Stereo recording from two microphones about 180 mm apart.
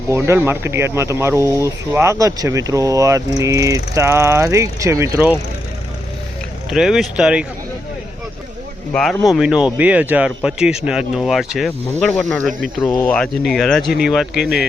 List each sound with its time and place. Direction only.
0.1 s speech: 15° right (ahead or behind)
6.7 s speech: 5° right (ahead or behind)
8.9 s speech: centre (ahead or behind)